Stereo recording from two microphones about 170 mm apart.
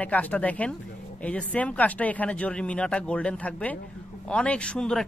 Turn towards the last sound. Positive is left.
turn(degrees=5)  # may be behind; listen again after turning